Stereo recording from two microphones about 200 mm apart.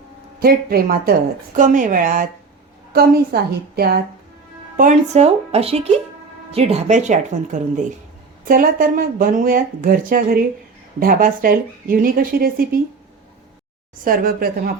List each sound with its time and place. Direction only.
0.3 s speech: 50° right (ahead or behind)
1.5 s speech: 40° right (ahead or behind)
4.8 s speech: 35° right (ahead or behind)
14.0 s speech: 45° right (ahead or behind)